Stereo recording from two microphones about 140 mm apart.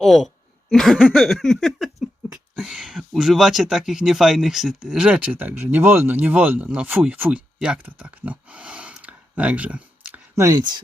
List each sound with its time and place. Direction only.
0.0 s a woman's voice: centre (ahead or behind)
0.7 s a sound: centre (ahead or behind)
10.3 s speech: 25° right (ahead or behind)